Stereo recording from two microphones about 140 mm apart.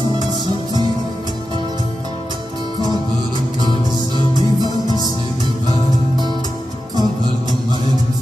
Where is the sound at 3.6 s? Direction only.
35° left (ahead or behind).